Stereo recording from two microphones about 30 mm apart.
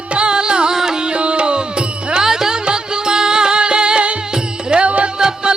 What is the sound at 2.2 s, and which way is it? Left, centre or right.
Music, centre.